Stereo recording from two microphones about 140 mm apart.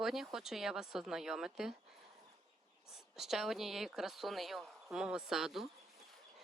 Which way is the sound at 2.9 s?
Centre (ahead or behind).